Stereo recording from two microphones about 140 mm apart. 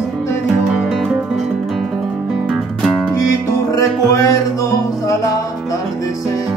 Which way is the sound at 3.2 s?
25° left (ahead or behind).